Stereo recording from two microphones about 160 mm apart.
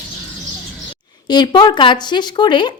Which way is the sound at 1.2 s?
25° left (ahead or behind).